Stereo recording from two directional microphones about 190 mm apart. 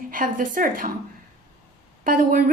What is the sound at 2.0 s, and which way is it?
Speech, 45° right (ahead or behind).